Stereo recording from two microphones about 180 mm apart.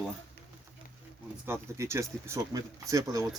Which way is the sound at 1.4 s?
15° right (ahead or behind).